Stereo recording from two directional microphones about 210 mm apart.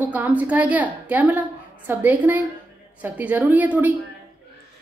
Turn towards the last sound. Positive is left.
turn(degrees=-10)  # may be behind; listen again after turning